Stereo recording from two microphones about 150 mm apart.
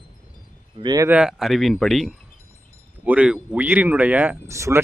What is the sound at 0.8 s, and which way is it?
Speech, 25° right (ahead or behind).